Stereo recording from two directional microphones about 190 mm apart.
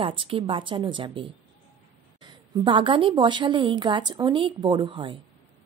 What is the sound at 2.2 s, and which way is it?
A woman's voice, 25° right (ahead or behind).